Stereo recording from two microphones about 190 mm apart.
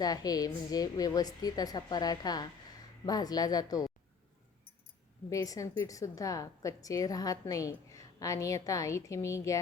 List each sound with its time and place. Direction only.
0.0 s a woman's voice: 20° left (ahead or behind)
5.3 s a woman's voice: 15° left (ahead or behind)